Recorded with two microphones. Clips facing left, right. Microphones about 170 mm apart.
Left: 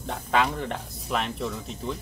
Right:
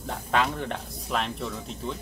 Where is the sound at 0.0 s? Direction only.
Centre (ahead or behind).